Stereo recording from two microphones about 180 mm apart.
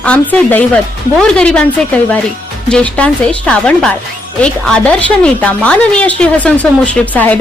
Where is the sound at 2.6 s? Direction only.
5° left (ahead or behind).